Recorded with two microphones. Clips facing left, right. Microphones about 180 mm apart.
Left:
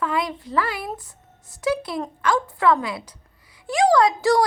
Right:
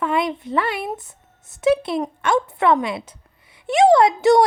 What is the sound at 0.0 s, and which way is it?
A woman's voice, 25° right (ahead or behind).